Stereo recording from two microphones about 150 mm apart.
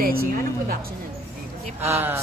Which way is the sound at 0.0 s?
85° right.